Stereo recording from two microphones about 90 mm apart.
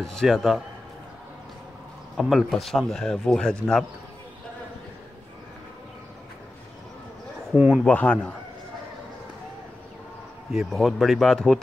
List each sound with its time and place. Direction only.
0.0 s speech: 5° left (ahead or behind)
2.1 s speech: centre (ahead or behind)
7.5 s a man's voice: 15° right (ahead or behind)
7.8 s a man's voice: 15° left (ahead or behind)
10.5 s speech: centre (ahead or behind)